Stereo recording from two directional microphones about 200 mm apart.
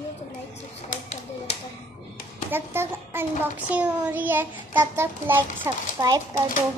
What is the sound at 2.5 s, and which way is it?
Speech, 10° right (ahead or behind).